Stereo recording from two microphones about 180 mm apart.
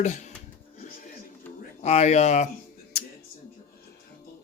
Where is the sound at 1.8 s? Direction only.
40° left (ahead or behind).